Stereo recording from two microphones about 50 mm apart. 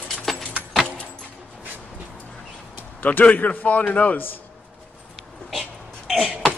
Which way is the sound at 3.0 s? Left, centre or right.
Left.